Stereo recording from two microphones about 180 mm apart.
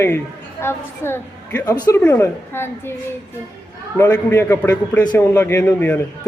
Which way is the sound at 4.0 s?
15° left (ahead or behind).